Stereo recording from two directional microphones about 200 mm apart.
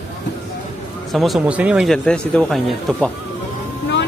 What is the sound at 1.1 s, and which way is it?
Speech, centre (ahead or behind).